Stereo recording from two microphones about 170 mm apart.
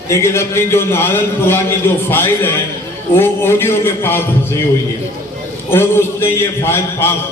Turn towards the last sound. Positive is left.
turn(degrees=15)  # may be behind; listen again after turning